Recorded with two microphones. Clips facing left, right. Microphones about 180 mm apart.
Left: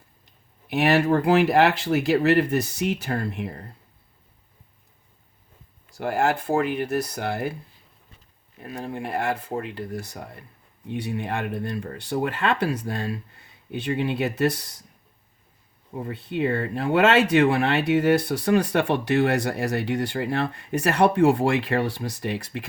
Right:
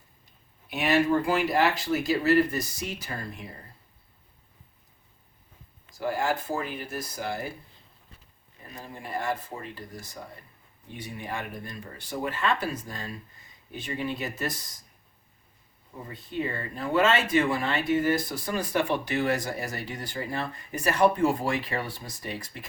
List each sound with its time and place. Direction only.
0.7 s speech: 60° left (ahead or behind)
5.9 s speech: 65° left (ahead or behind)
8.6 s speech: 70° left (ahead or behind)
16.0 s speech: 65° left (ahead or behind)